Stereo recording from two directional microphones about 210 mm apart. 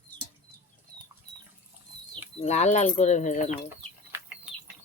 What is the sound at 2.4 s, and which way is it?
Speech, 35° left (ahead or behind).